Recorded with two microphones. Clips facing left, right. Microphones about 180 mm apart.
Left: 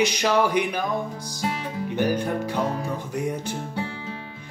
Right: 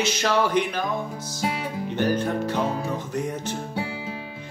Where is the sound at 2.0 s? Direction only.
10° left (ahead or behind).